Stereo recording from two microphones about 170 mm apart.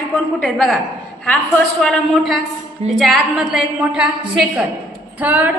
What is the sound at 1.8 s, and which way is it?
A woman's voice, 5° left (ahead or behind).